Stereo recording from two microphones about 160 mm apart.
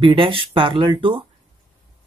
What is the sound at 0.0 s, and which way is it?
Speech, 30° right (ahead or behind).